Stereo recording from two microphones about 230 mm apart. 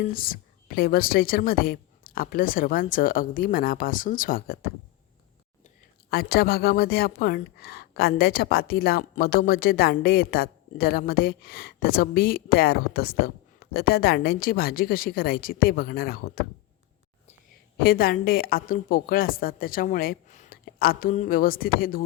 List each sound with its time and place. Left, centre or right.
0.1 s a woman's voice: left
17.7 s a woman's voice: left